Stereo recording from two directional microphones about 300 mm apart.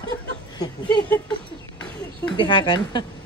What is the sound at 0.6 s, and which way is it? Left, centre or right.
Speech, centre.